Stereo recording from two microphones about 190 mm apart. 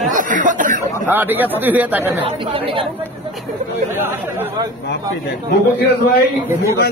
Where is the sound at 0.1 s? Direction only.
45° right (ahead or behind).